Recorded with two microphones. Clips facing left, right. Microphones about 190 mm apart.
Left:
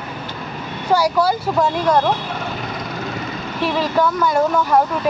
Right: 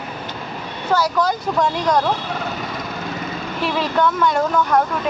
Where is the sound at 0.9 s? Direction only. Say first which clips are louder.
Left 2 dB; 10° left (ahead or behind).